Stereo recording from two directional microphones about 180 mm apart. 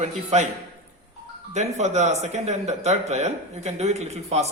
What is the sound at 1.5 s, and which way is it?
Speech, 40° right (ahead or behind).